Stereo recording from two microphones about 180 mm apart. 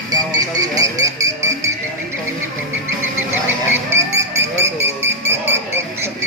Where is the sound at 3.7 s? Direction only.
15° right (ahead or behind).